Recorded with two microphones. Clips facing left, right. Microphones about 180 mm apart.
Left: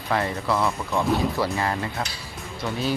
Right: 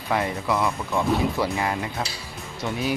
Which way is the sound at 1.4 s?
15° right (ahead or behind).